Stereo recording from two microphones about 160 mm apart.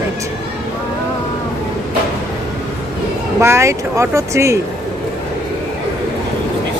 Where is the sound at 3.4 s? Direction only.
15° right (ahead or behind).